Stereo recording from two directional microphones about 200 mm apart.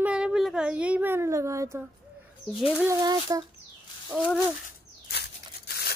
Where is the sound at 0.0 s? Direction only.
5° right (ahead or behind).